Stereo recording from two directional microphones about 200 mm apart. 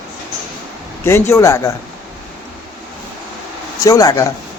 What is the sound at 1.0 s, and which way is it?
Speech, 15° left (ahead or behind).